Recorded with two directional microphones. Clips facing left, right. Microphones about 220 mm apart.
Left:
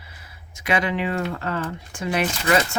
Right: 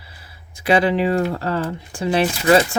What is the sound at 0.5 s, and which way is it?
Speech, 35° right (ahead or behind).